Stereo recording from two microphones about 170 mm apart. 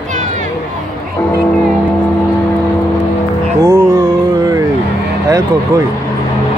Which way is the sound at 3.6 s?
15° right (ahead or behind).